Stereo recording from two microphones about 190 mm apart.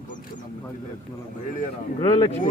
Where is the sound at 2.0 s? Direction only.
30° left (ahead or behind).